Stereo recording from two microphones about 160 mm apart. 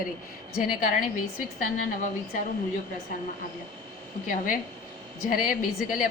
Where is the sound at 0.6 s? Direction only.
65° left (ahead or behind).